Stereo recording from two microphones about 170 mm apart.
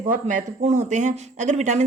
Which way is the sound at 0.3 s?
45° right (ahead or behind).